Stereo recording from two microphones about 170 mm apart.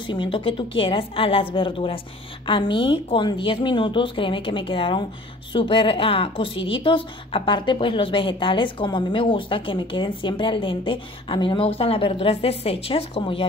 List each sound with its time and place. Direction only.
0.0 s a woman's voice: 30° left (ahead or behind)